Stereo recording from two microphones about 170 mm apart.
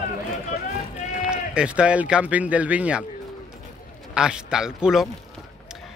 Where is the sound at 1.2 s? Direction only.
5° right (ahead or behind).